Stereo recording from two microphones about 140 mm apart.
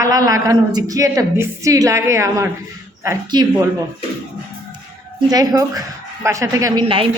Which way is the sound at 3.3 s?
30° right (ahead or behind).